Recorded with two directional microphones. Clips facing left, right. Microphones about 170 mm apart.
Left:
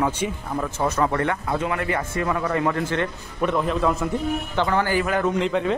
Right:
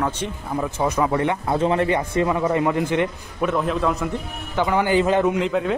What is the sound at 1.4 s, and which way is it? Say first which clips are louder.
Speech: right 5 dB; 30° right (ahead or behind).